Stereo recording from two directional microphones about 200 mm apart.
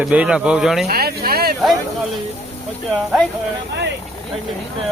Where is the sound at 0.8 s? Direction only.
50° right (ahead or behind).